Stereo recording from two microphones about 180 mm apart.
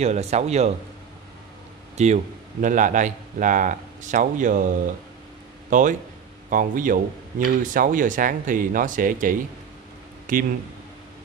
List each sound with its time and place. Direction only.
0.0 s speech: 40° right (ahead or behind)
2.0 s speech: 40° right (ahead or behind)